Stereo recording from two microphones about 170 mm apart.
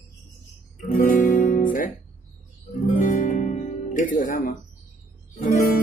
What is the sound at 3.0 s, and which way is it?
Music, 50° left (ahead or behind).